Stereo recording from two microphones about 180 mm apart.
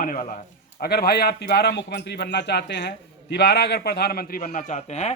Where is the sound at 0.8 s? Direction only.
60° left (ahead or behind).